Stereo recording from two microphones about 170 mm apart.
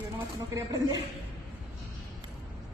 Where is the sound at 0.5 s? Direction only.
20° right (ahead or behind).